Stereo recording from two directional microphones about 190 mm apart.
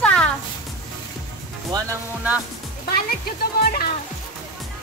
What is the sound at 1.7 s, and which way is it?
Speech, 20° right (ahead or behind).